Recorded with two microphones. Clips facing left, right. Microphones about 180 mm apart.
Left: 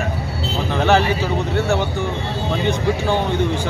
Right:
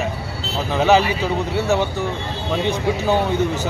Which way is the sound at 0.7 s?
5° right (ahead or behind).